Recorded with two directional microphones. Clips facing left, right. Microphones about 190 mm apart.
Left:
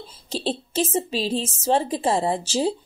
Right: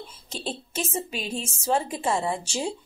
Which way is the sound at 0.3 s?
30° left (ahead or behind).